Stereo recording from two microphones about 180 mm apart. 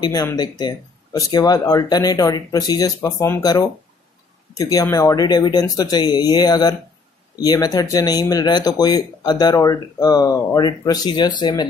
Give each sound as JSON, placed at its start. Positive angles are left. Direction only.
{"t": 0.0, "sound": "speech", "side_deg": 20}